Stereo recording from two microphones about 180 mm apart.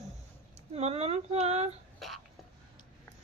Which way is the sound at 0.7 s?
35° right (ahead or behind).